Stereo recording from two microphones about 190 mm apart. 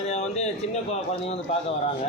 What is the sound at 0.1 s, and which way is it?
Speech, 35° left (ahead or behind).